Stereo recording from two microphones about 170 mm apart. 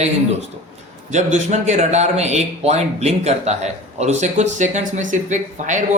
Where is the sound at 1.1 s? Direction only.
45° right (ahead or behind).